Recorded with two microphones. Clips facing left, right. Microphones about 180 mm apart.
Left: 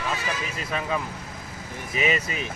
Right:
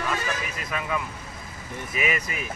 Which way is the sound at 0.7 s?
30° left (ahead or behind).